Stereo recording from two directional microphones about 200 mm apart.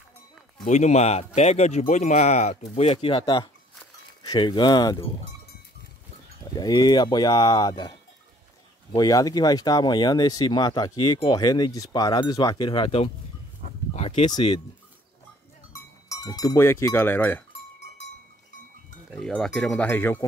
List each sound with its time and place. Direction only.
0.7 s speech: 35° left (ahead or behind)
6.5 s speech: 20° left (ahead or behind)
8.9 s speech: 20° left (ahead or behind)
15.7 s speech: 15° left (ahead or behind)
19.0 s speech: 5° left (ahead or behind)